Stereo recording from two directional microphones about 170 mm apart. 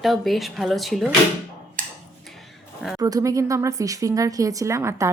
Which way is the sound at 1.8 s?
50° right (ahead or behind).